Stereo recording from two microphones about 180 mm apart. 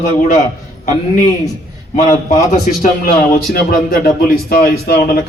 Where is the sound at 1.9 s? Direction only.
45° left (ahead or behind).